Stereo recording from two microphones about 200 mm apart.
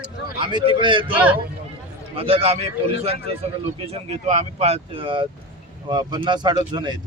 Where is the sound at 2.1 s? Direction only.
30° right (ahead or behind).